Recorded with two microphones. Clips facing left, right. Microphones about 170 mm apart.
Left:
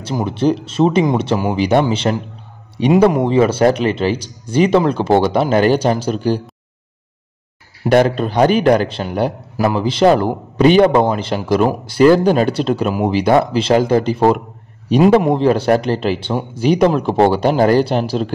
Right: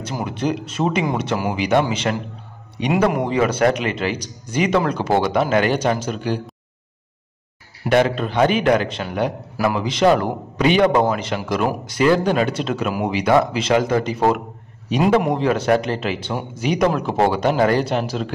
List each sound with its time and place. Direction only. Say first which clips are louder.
0.0 s a man's voice: left 6 dB; 30° left (ahead or behind)
7.9 s a man's voice: left 4 dB; 40° left (ahead or behind)